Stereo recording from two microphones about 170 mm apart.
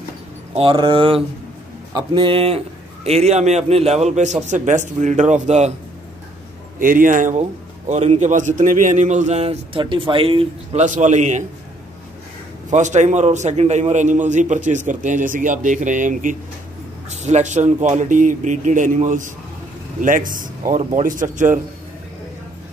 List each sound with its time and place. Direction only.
0.6 s a man's voice: 30° right (ahead or behind)
6.8 s a man's voice: 55° right (ahead or behind)
12.7 s a man's voice: 45° right (ahead or behind)